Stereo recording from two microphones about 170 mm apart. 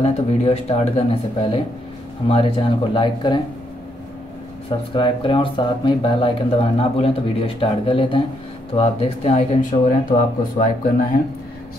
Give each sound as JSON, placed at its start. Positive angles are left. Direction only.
{"t": 0.0, "sound": "speech", "side_deg": 40}
{"t": 4.6, "sound": "speech", "side_deg": 30}